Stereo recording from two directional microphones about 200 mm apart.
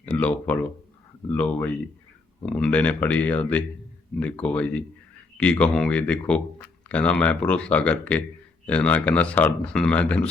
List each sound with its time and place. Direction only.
0.0 s speech: 5° left (ahead or behind)